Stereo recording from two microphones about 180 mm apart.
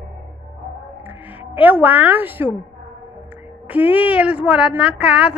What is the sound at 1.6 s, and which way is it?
Speech, 10° right (ahead or behind).